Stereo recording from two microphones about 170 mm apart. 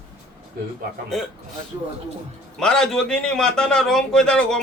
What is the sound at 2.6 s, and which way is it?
A man's voice, 5° left (ahead or behind).